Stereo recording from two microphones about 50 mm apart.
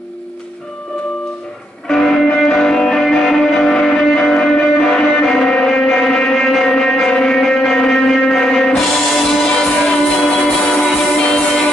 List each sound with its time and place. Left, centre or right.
1.9 s music: centre
10.4 s music: left